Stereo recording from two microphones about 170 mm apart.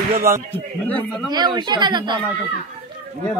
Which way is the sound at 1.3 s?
25° right (ahead or behind).